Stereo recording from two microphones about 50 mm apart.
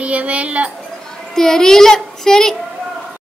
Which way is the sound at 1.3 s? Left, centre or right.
Centre.